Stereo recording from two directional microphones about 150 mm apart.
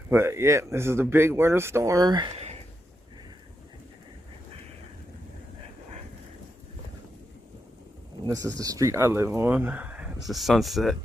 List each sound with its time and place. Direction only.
0.1 s speech: 15° right (ahead or behind)
8.3 s speech: 25° right (ahead or behind); by 10.9 s centre (ahead or behind)